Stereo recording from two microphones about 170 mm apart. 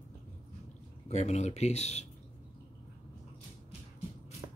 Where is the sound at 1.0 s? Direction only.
40° left (ahead or behind).